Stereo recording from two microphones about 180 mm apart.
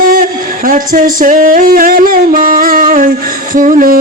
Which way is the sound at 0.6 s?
50° right (ahead or behind).